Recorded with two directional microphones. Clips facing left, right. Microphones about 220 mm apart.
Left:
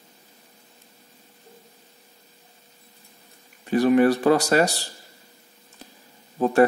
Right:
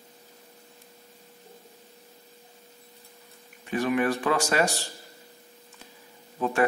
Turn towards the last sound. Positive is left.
turn(degrees=35)  # may be behind; listen again after turning